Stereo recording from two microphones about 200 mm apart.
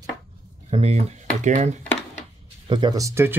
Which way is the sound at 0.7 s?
30° right (ahead or behind).